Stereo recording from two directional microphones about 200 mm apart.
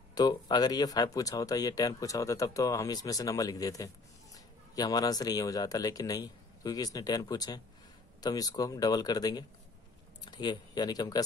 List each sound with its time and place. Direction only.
0.1 s speech: 20° left (ahead or behind)